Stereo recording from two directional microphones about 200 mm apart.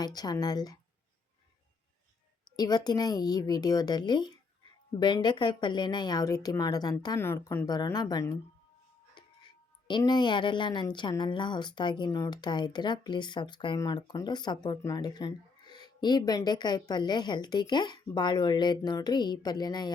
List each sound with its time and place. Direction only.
0.0 s speech: 20° left (ahead or behind)
2.6 s speech: 20° left (ahead or behind)
9.8 s speech: 20° left (ahead or behind)